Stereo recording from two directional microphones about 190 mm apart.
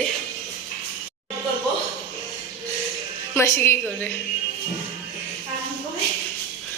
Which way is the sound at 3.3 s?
15° left (ahead or behind).